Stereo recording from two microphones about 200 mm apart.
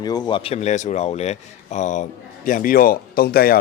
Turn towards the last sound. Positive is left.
turn(degrees=50)  # may be behind; listen again after turning